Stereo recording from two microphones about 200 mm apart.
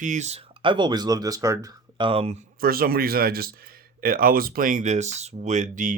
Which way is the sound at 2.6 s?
50° right (ahead or behind).